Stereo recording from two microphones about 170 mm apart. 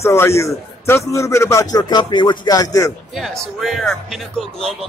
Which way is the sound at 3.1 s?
Centre (ahead or behind).